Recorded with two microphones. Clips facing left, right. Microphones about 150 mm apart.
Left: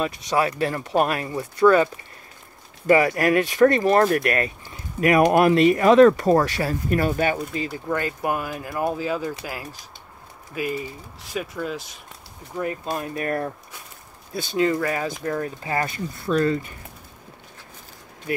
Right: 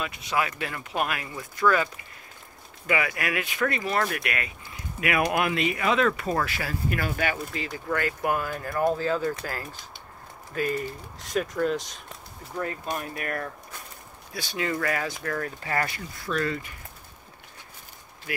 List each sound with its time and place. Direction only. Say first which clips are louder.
0.0 s speech: left 6 dB; 35° left (ahead or behind)
2.9 s speech: left 10 dB; 35° left (ahead or behind); by 12.7 s 15° left (ahead or behind)
12.9 s speech: left 6 dB; 30° left (ahead or behind)
14.6 s speech: left 6 dB; 25° left (ahead or behind)